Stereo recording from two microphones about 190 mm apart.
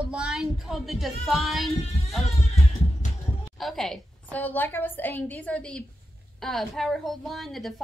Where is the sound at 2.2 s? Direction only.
35° left (ahead or behind).